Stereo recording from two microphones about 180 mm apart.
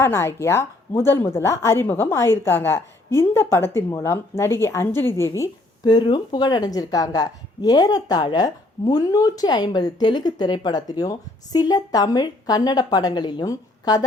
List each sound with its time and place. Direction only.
0.0 s a woman's voice: 15° left (ahead or behind)